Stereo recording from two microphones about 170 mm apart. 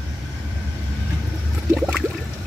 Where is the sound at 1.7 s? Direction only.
5° right (ahead or behind).